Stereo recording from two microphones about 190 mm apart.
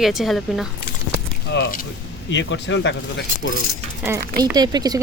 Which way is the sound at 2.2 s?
70° left (ahead or behind).